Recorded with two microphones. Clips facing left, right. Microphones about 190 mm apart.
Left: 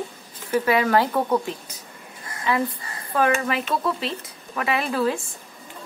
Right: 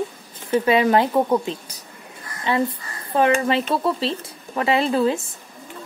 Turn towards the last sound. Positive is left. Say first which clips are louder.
# right 4 dB
turn(degrees=-25)  # may be behind; listen again after turning